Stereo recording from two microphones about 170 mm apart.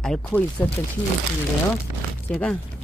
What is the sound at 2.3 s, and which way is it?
Speech, centre (ahead or behind).